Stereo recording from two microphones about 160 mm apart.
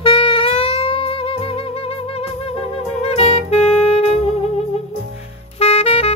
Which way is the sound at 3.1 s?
40° left (ahead or behind).